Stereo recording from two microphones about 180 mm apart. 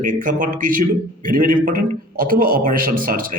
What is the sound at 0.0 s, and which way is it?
A man's voice, 45° right (ahead or behind).